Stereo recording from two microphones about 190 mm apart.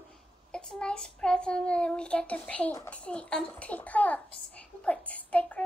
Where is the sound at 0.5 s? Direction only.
5° left (ahead or behind).